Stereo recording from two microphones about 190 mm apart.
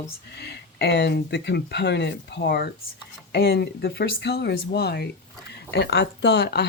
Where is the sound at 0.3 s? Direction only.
60° left (ahead or behind).